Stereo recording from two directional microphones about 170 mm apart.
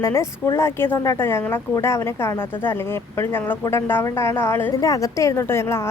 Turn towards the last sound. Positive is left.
turn(degrees=15)  # may be behind; listen again after turning